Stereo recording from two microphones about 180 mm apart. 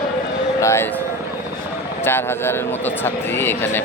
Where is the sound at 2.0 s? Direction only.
15° left (ahead or behind).